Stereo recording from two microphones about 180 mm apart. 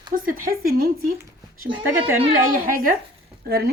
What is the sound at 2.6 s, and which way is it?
Speech, 50° right (ahead or behind).